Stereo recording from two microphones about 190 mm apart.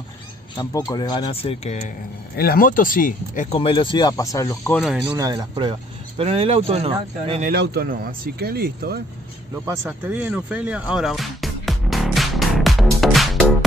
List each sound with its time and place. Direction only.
0.6 s speech: 20° left (ahead or behind)
2.3 s speech: 55° left (ahead or behind); by 4.8 s 15° left (ahead or behind)
5.1 s speech: 20° right (ahead or behind)
7.4 s speech: 55° right (ahead or behind)
9.7 s music: 10° right (ahead or behind)